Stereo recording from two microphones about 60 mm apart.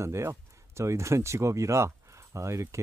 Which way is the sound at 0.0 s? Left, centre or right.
Right.